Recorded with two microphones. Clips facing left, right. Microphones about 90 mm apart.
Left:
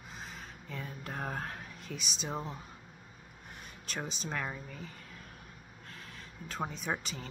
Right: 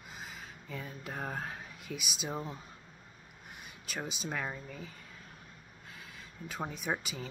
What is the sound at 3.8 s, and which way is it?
Speech, 10° right (ahead or behind).